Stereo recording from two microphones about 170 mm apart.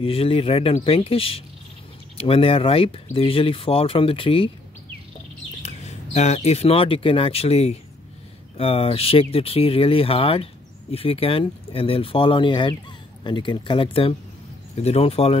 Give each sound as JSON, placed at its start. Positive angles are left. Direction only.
{"t": 0.0, "sound": "speech", "side_deg": 35}
{"t": 5.6, "sound": "speech", "side_deg": 40}